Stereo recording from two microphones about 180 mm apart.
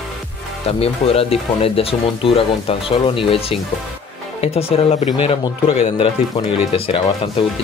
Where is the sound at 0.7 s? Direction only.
35° left (ahead or behind).